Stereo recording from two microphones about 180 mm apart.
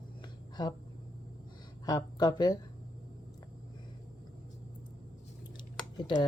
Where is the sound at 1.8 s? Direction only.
20° left (ahead or behind).